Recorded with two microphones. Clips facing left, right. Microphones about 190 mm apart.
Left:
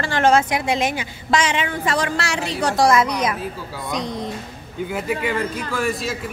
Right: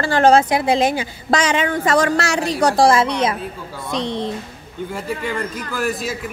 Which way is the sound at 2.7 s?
30° right (ahead or behind).